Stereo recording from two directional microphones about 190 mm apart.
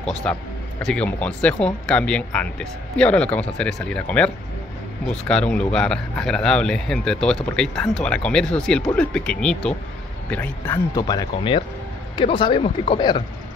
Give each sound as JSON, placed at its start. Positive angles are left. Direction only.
{"t": 0.3, "sound": "speech", "side_deg": 5}
{"t": 11.0, "sound": "speech", "side_deg": 20}